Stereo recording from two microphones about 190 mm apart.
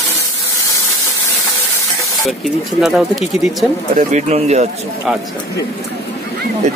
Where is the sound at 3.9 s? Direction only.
35° right (ahead or behind).